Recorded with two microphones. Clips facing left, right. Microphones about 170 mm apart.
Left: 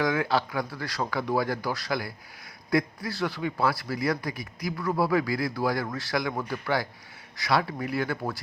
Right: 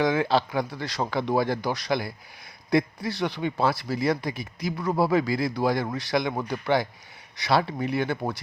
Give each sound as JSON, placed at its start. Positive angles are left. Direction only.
{"t": 0.0, "sound": "speech", "side_deg": -25}